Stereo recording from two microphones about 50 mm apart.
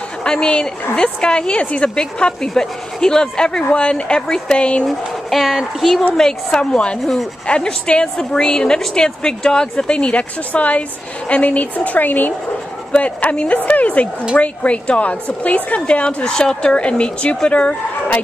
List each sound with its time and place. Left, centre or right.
0.2 s a woman's voice: centre
4.8 s speech: centre
6.1 s a woman's voice: centre